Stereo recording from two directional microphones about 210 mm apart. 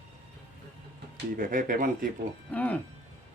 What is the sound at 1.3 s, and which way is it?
Speech, 40° right (ahead or behind).